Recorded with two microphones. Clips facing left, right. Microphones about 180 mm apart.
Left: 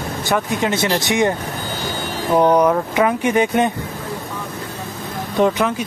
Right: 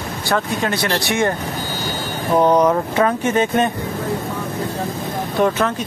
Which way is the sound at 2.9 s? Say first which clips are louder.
Left 1 dB; 15° left (ahead or behind).